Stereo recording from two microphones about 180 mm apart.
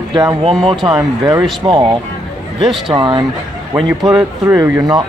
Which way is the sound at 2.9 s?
25° right (ahead or behind).